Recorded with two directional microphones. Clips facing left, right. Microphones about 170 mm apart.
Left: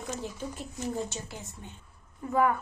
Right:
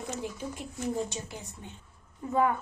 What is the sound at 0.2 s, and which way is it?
A woman's voice, 15° right (ahead or behind).